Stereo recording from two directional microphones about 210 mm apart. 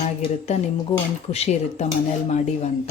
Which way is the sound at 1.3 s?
30° left (ahead or behind).